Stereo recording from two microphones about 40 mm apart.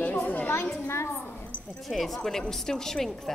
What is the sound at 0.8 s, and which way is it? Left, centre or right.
Speech, left.